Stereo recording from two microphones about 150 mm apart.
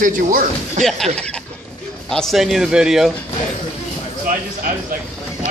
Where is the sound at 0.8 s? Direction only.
Centre (ahead or behind).